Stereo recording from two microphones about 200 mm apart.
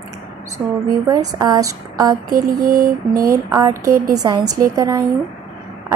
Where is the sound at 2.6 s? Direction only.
45° right (ahead or behind).